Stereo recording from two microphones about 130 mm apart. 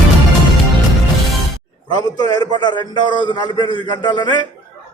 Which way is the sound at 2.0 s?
30° left (ahead or behind).